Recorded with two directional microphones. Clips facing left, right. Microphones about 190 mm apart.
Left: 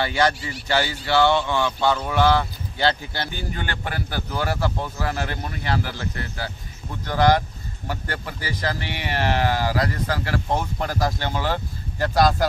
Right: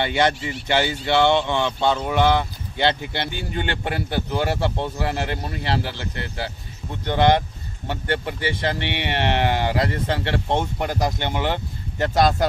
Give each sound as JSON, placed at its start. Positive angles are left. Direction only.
{"t": 0.0, "sound": "speech", "side_deg": -20}